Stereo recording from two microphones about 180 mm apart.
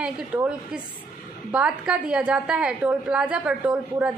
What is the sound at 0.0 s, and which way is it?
A woman's voice, 5° right (ahead or behind).